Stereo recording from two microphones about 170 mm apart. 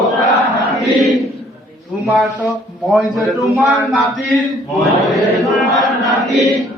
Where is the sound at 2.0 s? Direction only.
Centre (ahead or behind).